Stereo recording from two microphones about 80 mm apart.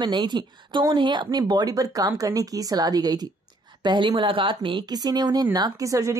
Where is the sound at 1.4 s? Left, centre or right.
Right.